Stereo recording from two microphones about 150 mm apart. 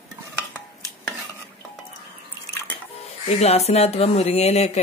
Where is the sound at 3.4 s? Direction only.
45° left (ahead or behind).